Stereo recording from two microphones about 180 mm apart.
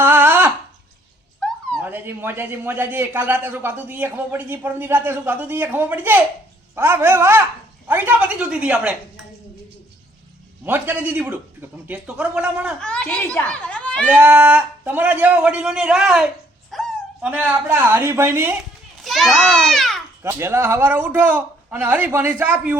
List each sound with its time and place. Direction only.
0.0 s a sound: 10° right (ahead or behind)
1.4 s a sound: 5° left (ahead or behind)
1.8 s a man's voice: 10° right (ahead or behind)
10.7 s a man's voice: 10° right (ahead or behind)
12.8 s a child's voice: 5° left (ahead or behind)
14.1 s a man's voice: 10° right (ahead or behind)
16.7 s a sound: centre (ahead or behind)
17.3 s a man's voice: 10° right (ahead or behind)
19.0 s a child's voice: centre (ahead or behind)
20.2 s a man's voice: 15° right (ahead or behind)